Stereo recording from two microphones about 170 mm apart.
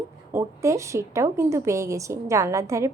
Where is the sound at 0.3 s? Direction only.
15° right (ahead or behind).